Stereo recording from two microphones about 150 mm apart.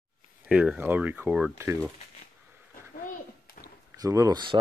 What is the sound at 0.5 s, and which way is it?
Speech, 10° right (ahead or behind).